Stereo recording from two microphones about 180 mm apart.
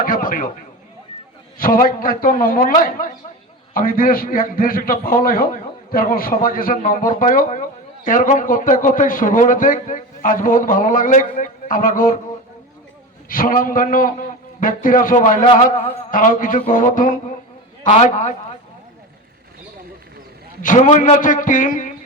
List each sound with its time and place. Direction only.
0.0 s a sound: 50° left (ahead or behind)
1.5 s a man's voice: 50° left (ahead or behind)
13.2 s a man's voice: 50° left (ahead or behind)
20.6 s a man's voice: 45° left (ahead or behind)